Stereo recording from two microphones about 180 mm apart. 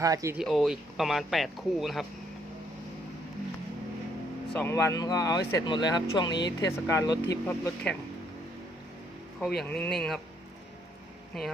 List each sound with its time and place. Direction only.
0.0 s speech: 20° right (ahead or behind)
0.3 s speech: centre (ahead or behind)
4.5 s speech: 15° left (ahead or behind)
9.6 s speech: 5° left (ahead or behind)